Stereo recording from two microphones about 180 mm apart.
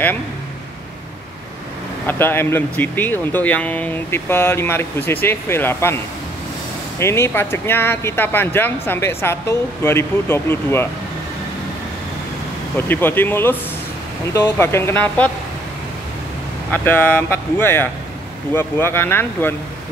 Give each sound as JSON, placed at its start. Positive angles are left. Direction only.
{"t": 2.0, "sound": "speech", "side_deg": 15}
{"t": 7.0, "sound": "speech", "side_deg": 15}
{"t": 12.7, "sound": "speech", "side_deg": 10}
{"t": 16.7, "sound": "speech", "side_deg": 10}